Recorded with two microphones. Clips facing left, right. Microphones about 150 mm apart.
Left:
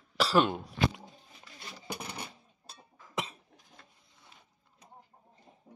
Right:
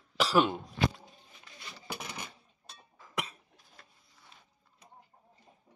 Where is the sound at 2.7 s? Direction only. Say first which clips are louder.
Left 2 dB; 25° left (ahead or behind).